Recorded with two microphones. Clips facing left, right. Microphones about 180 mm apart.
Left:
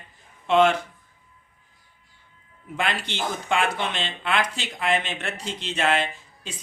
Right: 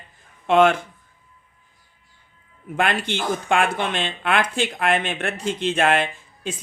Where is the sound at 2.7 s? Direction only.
50° right (ahead or behind).